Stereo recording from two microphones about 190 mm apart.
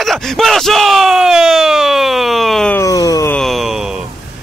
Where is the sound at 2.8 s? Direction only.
20° left (ahead or behind).